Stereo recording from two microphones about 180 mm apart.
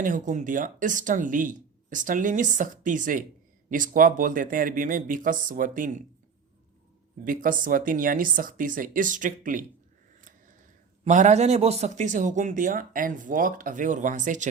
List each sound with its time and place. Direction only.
0.0 s speech: 45° right (ahead or behind)
7.3 s speech: 50° right (ahead or behind)
10.2 s scissors: 45° right (ahead or behind)
11.0 s speech: 40° right (ahead or behind)